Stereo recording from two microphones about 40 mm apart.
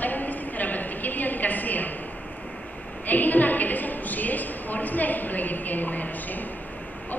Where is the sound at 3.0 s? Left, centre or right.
Left.